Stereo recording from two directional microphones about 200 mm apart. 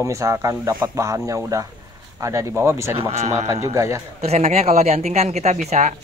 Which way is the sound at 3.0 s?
30° right (ahead or behind).